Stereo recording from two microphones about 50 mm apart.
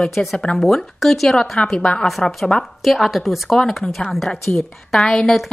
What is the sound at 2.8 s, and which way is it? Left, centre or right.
Speech, centre.